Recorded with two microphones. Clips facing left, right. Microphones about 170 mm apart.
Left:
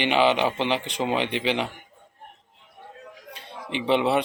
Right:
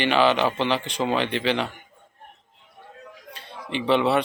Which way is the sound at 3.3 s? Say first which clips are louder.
Right 1 dB; 15° left (ahead or behind).